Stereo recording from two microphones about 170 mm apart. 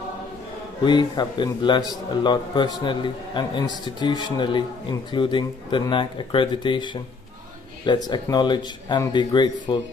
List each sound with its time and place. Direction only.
0.8 s a man's voice: 25° left (ahead or behind)